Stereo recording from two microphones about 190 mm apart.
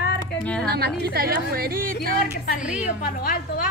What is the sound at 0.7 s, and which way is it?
A woman's voice, 55° right (ahead or behind).